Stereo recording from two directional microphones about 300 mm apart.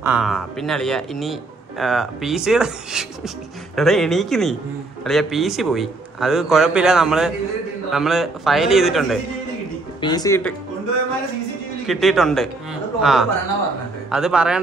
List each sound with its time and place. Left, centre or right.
0.0 s a man's voice: centre
9.9 s speech: centre
11.8 s a man's voice: centre